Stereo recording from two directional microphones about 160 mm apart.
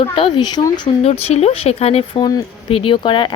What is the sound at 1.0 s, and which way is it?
A woman's voice, 40° left (ahead or behind).